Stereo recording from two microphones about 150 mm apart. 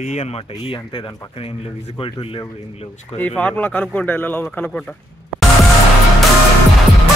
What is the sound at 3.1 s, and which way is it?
Speech, 10° left (ahead or behind).